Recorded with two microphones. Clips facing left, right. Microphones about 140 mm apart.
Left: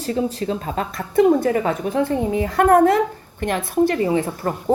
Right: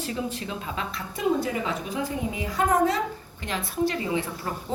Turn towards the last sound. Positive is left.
turn(degrees=50)  # may be behind; listen again after turning